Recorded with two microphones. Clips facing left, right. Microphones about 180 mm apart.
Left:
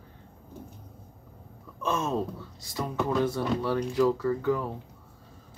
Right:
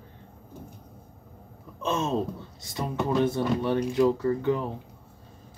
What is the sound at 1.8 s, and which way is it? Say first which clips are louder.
Speech: right 2 dB; 25° right (ahead or behind).